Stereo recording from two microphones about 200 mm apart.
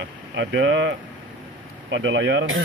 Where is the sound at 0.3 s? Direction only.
65° right (ahead or behind).